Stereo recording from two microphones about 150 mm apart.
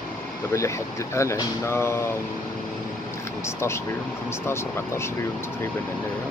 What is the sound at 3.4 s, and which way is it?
Speech, 20° left (ahead or behind).